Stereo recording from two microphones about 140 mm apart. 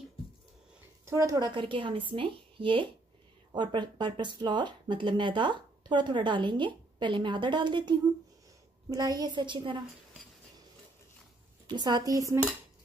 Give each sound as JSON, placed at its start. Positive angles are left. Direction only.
{"t": 1.0, "sound": "speech", "side_deg": -20}
{"t": 8.9, "sound": "speech", "side_deg": -30}
{"t": 11.6, "sound": "a woman's voice", "side_deg": -30}